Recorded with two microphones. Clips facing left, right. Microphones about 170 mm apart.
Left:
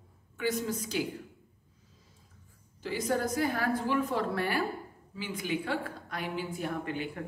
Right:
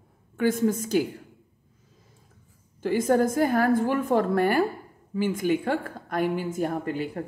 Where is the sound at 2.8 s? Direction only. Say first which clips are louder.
Right 9 dB; 50° right (ahead or behind).